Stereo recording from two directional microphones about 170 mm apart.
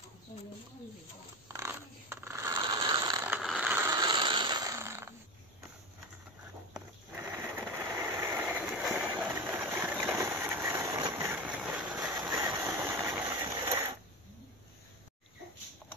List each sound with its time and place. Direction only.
1.5 s scissors: 15° right (ahead or behind)
2.5 s mechanisms: 25° right (ahead or behind)
3.3 s ratchet: 5° right (ahead or behind)
3.9 s mechanisms: 25° right (ahead or behind)
6.7 s sewing machine: 10° right (ahead or behind)
10.1 s engine: 15° right (ahead or behind)
11.4 s vehicle: 5° right (ahead or behind)
12.0 s engine: 20° right (ahead or behind)